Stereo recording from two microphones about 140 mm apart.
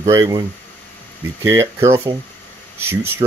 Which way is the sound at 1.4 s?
20° right (ahead or behind).